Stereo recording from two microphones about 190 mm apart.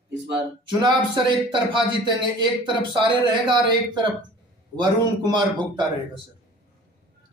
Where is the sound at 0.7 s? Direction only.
25° right (ahead or behind).